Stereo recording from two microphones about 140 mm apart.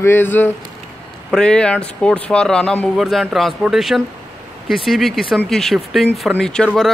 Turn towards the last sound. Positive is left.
turn(degrees=5)  # may be behind; listen again after turning